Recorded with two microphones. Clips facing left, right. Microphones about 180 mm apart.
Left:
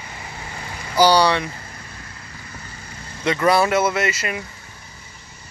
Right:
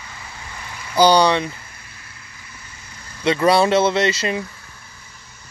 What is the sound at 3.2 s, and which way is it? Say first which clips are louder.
Speech: right 2 dB; 25° right (ahead or behind).